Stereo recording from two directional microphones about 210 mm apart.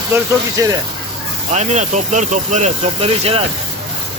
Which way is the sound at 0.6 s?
15° right (ahead or behind).